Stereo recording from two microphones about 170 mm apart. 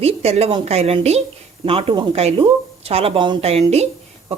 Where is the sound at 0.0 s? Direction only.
35° right (ahead or behind).